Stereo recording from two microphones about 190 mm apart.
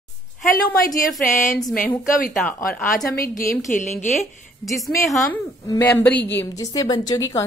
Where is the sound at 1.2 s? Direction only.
40° left (ahead or behind).